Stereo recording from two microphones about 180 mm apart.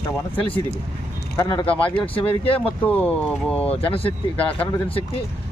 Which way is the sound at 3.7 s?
30° left (ahead or behind).